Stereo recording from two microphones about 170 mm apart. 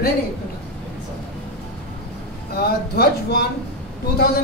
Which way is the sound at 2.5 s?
70° left (ahead or behind).